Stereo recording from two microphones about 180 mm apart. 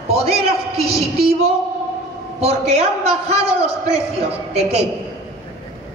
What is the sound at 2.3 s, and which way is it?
A woman's voice, 35° right (ahead or behind).